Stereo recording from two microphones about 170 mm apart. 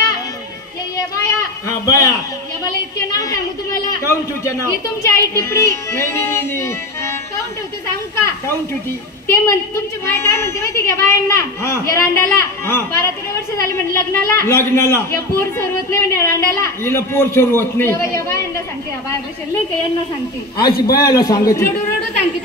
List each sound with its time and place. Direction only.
0.9 s children playing: 20° left (ahead or behind)
1.9 s a man's voice: 20° left (ahead or behind)
2.6 s a sound: 20° left (ahead or behind)
4.1 s a man's voice: 15° left (ahead or behind)
9.3 s a man's voice: 15° left (ahead or behind)
21.0 s a man's voice: 20° left (ahead or behind)